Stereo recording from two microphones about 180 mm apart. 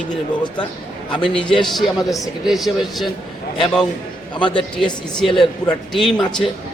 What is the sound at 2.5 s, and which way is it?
Speech, centre (ahead or behind).